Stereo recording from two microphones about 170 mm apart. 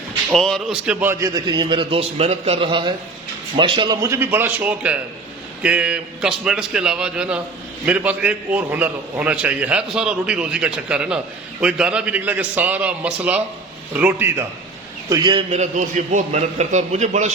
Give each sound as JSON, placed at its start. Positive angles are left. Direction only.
{"t": 0.3, "sound": "a man's voice", "side_deg": 5}
{"t": 1.3, "sound": "a man's voice", "side_deg": -25}
{"t": 15.1, "sound": "a man's voice", "side_deg": -25}